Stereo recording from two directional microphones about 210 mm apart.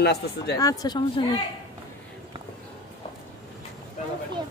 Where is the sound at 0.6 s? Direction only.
15° left (ahead or behind).